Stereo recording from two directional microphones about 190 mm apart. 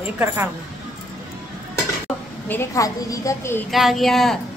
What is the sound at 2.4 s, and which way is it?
A woman's voice, 15° left (ahead or behind).